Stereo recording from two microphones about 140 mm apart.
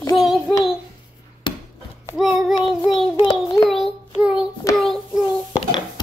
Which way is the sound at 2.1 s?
5° right (ahead or behind).